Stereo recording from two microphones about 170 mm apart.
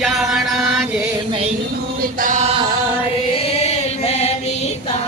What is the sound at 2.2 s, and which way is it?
Chant, 45° right (ahead or behind).